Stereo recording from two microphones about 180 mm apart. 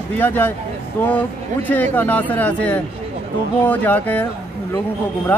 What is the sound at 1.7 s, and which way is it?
Speech, 10° left (ahead or behind).